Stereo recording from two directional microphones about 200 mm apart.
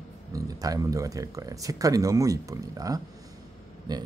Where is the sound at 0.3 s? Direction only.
15° right (ahead or behind).